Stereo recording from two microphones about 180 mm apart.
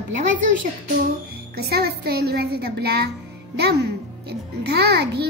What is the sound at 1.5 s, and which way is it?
A child's voice, 60° right (ahead or behind).